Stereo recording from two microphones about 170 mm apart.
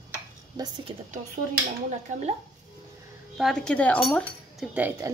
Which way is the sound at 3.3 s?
Centre (ahead or behind).